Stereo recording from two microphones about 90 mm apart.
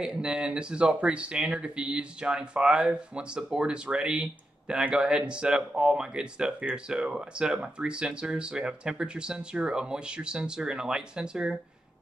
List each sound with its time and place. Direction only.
0.0 s speech: 10° right (ahead or behind)